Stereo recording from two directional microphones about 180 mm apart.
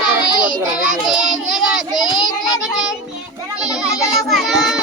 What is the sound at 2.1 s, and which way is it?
Speech, 20° left (ahead or behind).